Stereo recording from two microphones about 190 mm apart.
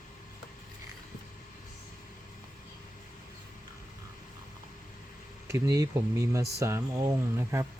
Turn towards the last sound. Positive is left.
turn(degrees=-15)  # may be behind; listen again after turning